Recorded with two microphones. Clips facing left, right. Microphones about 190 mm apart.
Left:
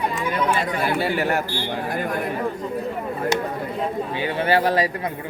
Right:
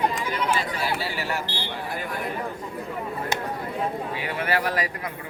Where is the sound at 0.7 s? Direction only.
55° left (ahead or behind).